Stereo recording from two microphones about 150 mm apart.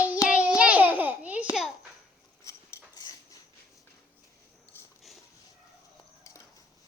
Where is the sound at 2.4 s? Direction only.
25° left (ahead or behind).